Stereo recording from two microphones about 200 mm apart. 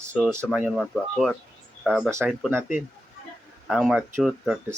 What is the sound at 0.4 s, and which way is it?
Speech, centre (ahead or behind).